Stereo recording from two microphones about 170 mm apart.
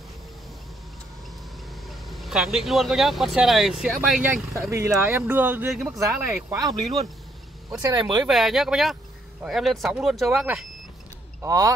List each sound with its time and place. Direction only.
2.0 s speech: centre (ahead or behind)
4.6 s speech: 15° right (ahead or behind)
7.9 s speech: 25° right (ahead or behind)
8.3 s speech: centre (ahead or behind)
11.4 s speech: 20° right (ahead or behind)